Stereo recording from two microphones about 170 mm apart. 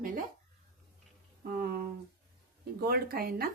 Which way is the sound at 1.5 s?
60° right (ahead or behind).